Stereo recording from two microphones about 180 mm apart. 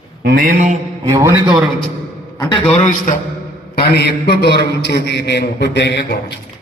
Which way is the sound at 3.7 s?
60° left (ahead or behind).